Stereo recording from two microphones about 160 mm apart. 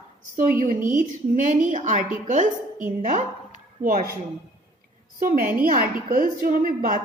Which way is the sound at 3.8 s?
60° right (ahead or behind).